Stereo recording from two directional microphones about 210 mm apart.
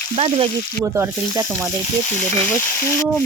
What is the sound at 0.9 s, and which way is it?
Frying, 10° right (ahead or behind).